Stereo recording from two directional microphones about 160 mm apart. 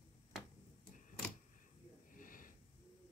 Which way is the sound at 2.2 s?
60° left (ahead or behind).